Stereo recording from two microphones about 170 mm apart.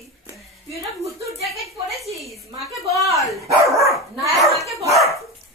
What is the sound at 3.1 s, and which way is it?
Dog, 20° right (ahead or behind).